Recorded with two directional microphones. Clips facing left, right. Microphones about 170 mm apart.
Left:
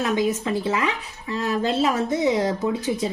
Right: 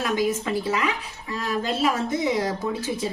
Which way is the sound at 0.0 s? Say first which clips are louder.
Left 2 dB; 25° left (ahead or behind).